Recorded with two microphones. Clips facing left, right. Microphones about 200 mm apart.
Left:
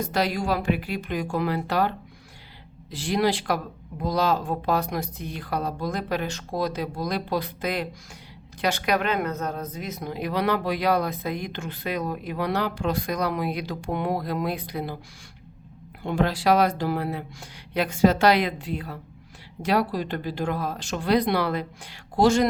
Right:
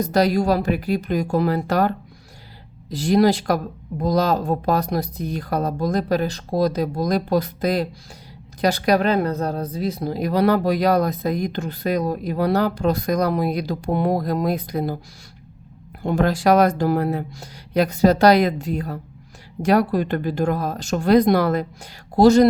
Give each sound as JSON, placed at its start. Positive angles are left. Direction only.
{"t": 0.0, "sound": "speech", "side_deg": -40}
{"t": 16.0, "sound": "speech", "side_deg": -45}